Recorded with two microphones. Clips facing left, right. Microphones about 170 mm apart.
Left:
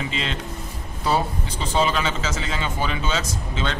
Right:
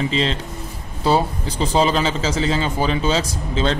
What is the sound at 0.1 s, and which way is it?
A man's voice, 30° right (ahead or behind).